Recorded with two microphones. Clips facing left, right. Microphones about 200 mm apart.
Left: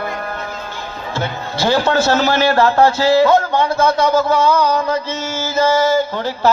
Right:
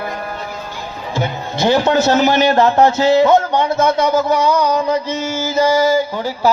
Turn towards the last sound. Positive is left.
turn(degrees=-10)  # may be behind; listen again after turning